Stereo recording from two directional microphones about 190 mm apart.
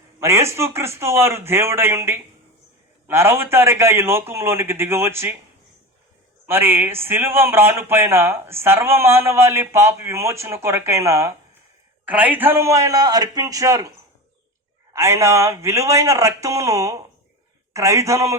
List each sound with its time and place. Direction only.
0.2 s a man's voice: 15° right (ahead or behind)
6.4 s a man's voice: 10° right (ahead or behind)
14.9 s a man's voice: 15° right (ahead or behind)